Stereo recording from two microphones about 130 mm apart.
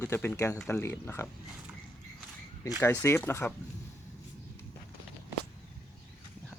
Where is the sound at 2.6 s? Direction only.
25° left (ahead or behind).